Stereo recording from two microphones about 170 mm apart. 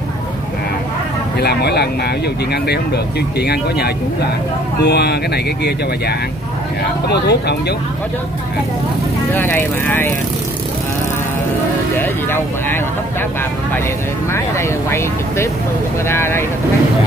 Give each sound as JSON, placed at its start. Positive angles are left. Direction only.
{"t": 1.4, "sound": "speech", "side_deg": 75}
{"t": 3.3, "sound": "speech", "side_deg": 70}
{"t": 9.3, "sound": "speech", "side_deg": 10}
{"t": 12.0, "sound": "speech", "side_deg": 15}
{"t": 14.3, "sound": "speech", "side_deg": 15}